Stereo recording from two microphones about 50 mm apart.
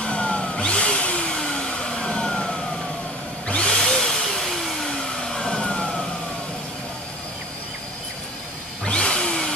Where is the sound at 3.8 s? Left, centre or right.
Centre.